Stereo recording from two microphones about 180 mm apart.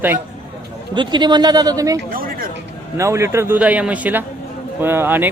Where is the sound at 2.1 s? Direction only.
55° right (ahead or behind).